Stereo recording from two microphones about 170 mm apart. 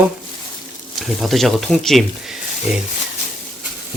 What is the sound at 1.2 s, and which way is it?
Speech, centre (ahead or behind).